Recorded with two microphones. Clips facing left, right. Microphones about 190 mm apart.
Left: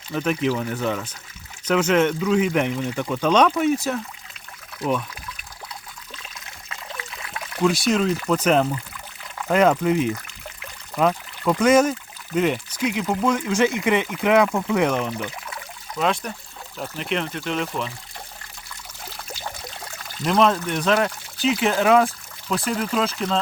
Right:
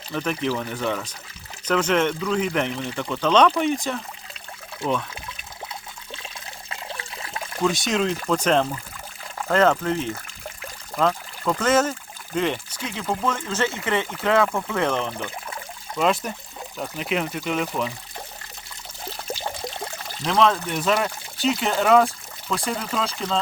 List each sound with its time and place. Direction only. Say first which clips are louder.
0.1 s speech: left 3 dB; 5° left (ahead or behind)
4.8 s speech: left 1 dB; 25° right (ahead or behind)
6.7 s pour: even; 30° right (ahead or behind)
7.6 s speech: left 3 dB; centre (ahead or behind)
9.5 s speech: left 2 dB; 10° left (ahead or behind)
16.0 s speech: right 1 dB; centre (ahead or behind)
20.2 s speech: left 1 dB; centre (ahead or behind)